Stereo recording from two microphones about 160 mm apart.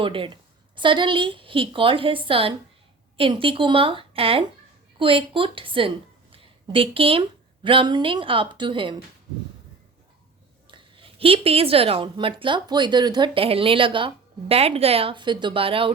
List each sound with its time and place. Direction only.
0.0 s a woman's voice: 30° right (ahead or behind)
10.7 s a woman's voice: 30° right (ahead or behind)